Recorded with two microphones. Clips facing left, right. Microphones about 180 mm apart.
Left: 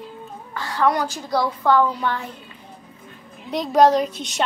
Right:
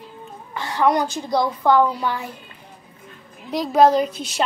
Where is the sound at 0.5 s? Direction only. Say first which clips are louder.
Right 2 dB; 20° right (ahead or behind).